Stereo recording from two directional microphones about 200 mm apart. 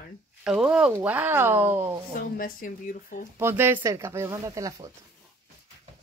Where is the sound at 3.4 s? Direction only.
10° right (ahead or behind).